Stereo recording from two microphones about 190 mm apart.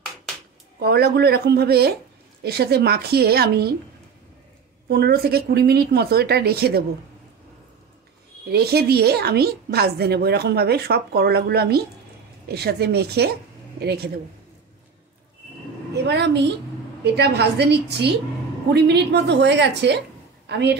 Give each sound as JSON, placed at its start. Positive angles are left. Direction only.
{"t": 0.7, "sound": "a woman's voice", "side_deg": -60}
{"t": 4.8, "sound": "a woman's voice", "side_deg": -55}
{"t": 8.5, "sound": "a woman's voice", "side_deg": -55}
{"t": 15.9, "sound": "a woman's voice", "side_deg": -60}